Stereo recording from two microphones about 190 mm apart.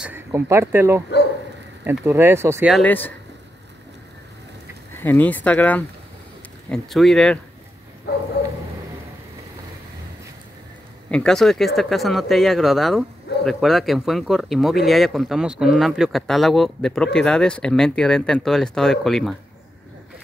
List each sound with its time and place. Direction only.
0.0 s speech: 10° right (ahead or behind)
2.7 s speech: 10° left (ahead or behind)
4.9 s speech: 10° left (ahead or behind)
8.1 s bow-wow: 60° left (ahead or behind)
11.1 s speech: 5° left (ahead or behind)